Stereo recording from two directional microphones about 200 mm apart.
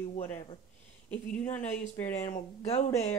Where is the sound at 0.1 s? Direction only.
35° left (ahead or behind).